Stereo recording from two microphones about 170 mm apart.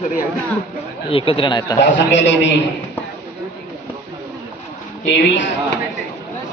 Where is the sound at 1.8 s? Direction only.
90° left.